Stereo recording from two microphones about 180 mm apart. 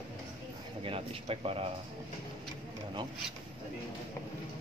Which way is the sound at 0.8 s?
30° right (ahead or behind).